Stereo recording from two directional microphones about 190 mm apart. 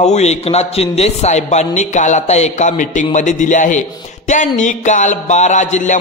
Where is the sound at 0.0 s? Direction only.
35° left (ahead or behind).